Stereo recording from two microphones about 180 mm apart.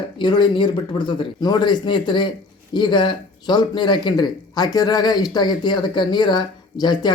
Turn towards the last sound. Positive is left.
turn(degrees=25)  # may be behind; listen again after turning